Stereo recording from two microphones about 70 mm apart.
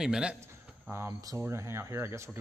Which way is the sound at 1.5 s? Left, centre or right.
Right.